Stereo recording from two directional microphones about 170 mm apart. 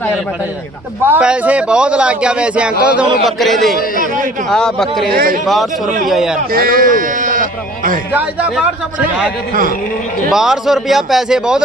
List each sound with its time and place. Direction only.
1.0 s a man's voice: 10° right (ahead or behind)
5.1 s speech: 60° right (ahead or behind)
6.1 s a man's voice: 5° right (ahead or behind)
6.5 s speech: 60° right (ahead or behind)
8.1 s a man's voice: 10° right (ahead or behind)
10.3 s a man's voice: centre (ahead or behind)